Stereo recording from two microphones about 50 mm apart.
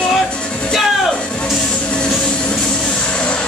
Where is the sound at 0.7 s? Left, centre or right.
Centre.